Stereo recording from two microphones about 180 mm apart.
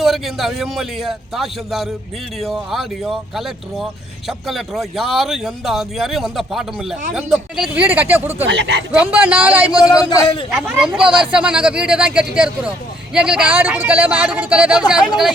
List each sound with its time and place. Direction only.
0.0 s speech: centre (ahead or behind)
8.4 s speech: 75° right (ahead or behind)
8.9 s speech: 5° right (ahead or behind)
9.8 s a man's voice: 20° left (ahead or behind)
10.5 s speech: 5° right (ahead or behind)